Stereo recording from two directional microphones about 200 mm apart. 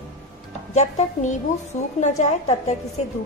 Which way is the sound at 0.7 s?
35° left (ahead or behind).